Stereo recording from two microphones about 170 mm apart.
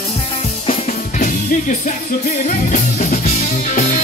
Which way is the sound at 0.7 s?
45° left (ahead or behind).